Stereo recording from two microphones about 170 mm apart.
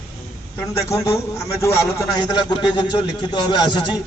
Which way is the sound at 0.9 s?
15° left (ahead or behind).